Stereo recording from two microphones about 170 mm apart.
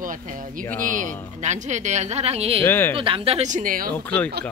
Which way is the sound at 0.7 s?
50° right (ahead or behind).